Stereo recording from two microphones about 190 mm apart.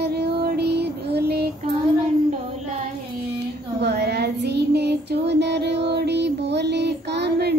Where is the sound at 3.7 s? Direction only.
60° right (ahead or behind).